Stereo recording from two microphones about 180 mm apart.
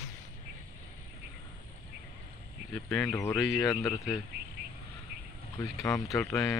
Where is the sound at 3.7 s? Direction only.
15° left (ahead or behind).